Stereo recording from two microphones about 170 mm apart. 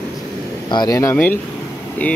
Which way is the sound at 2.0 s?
10° left (ahead or behind).